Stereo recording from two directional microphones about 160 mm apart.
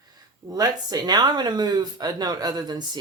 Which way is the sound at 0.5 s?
25° right (ahead or behind).